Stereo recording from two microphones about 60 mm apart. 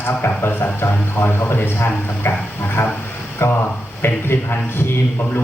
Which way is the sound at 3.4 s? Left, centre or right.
Left.